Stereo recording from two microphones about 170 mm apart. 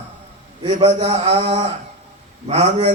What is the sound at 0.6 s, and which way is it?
A man's voice, 35° right (ahead or behind).